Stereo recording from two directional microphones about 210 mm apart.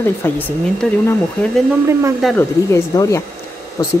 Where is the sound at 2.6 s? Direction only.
15° left (ahead or behind).